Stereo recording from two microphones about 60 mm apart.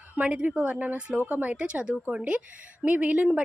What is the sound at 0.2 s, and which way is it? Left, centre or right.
A woman's voice, right.